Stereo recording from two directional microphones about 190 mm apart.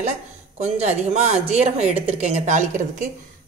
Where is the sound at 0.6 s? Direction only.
35° right (ahead or behind).